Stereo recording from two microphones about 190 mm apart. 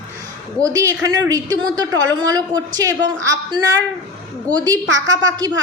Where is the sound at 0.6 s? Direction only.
15° right (ahead or behind).